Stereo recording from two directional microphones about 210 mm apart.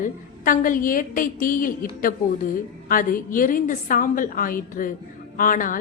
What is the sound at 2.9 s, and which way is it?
A woman's voice, 40° left (ahead or behind).